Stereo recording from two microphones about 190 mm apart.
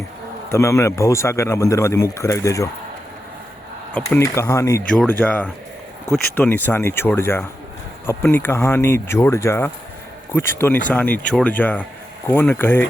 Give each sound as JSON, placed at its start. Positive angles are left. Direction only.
{"t": 0.5, "sound": "a man's voice", "side_deg": 15}
{"t": 3.9, "sound": "a man's voice", "side_deg": 10}